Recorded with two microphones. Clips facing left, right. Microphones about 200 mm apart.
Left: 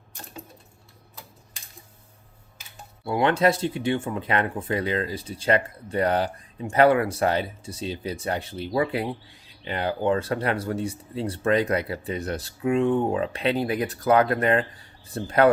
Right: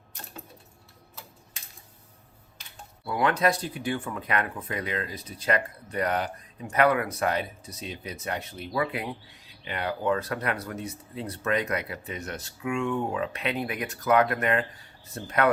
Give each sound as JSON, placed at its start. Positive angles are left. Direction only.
{"t": 3.0, "sound": "speech", "side_deg": 25}